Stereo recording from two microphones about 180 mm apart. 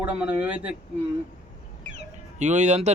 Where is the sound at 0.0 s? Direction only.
10° right (ahead or behind).